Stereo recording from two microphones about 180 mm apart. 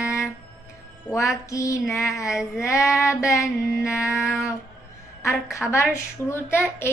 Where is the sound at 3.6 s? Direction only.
5° right (ahead or behind).